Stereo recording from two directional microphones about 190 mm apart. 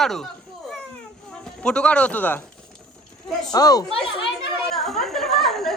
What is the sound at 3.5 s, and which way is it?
Speech, 20° left (ahead or behind).